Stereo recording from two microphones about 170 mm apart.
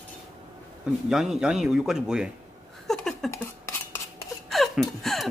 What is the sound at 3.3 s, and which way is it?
Dishes, 15° left (ahead or behind).